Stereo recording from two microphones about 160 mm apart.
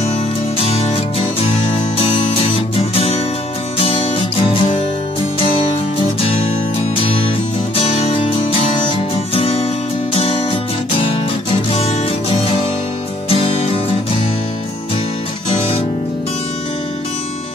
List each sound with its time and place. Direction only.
0.7 s music: 40° left (ahead or behind)
2.0 s music: 35° left (ahead or behind)
7.7 s music: 35° left (ahead or behind)
11.7 s music: 35° left (ahead or behind)